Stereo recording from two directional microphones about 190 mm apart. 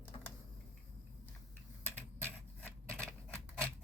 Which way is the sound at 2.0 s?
10° left (ahead or behind).